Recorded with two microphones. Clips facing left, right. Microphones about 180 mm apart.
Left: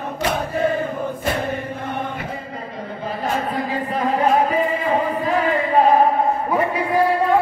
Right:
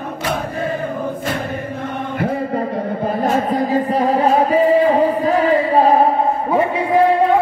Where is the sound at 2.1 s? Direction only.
60° right (ahead or behind); by 7.2 s 25° right (ahead or behind).